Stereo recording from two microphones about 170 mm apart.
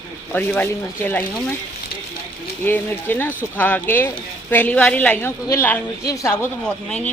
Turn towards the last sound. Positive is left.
turn(degrees=5)  # may be behind; listen again after turning